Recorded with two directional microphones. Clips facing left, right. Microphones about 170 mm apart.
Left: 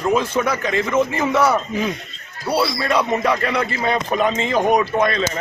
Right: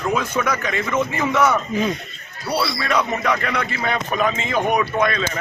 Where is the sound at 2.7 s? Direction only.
30° left (ahead or behind).